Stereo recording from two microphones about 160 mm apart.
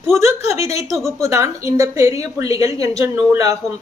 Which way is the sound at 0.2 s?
20° right (ahead or behind).